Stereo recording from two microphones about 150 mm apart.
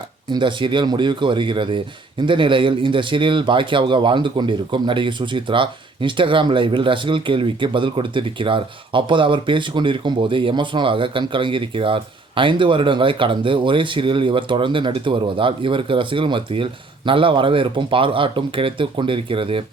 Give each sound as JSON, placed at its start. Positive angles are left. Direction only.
{"t": 0.3, "sound": "a man's voice", "side_deg": -30}